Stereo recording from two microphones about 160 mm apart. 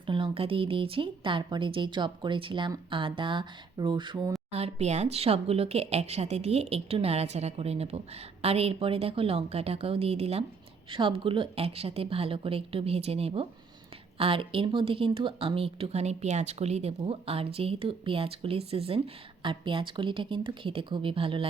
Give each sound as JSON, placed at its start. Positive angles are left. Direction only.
{"t": 0.0, "sound": "speech", "side_deg": -30}
{"t": 4.5, "sound": "speech", "side_deg": -40}